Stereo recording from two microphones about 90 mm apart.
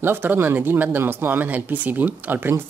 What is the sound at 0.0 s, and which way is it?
Speech, 25° right (ahead or behind).